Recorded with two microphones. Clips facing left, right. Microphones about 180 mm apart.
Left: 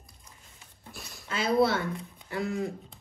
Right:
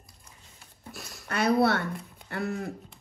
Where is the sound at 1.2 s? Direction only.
65° right (ahead or behind).